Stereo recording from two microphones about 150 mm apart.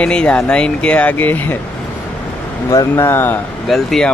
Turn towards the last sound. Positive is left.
turn(degrees=0)  # may be behind; listen again after turning